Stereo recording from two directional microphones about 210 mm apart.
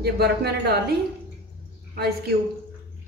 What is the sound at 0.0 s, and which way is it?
Speech, 50° right (ahead or behind).